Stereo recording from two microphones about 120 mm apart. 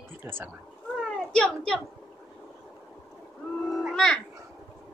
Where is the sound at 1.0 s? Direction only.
10° left (ahead or behind).